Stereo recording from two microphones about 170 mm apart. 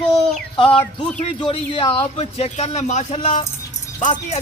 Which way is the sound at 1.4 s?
30° left (ahead or behind).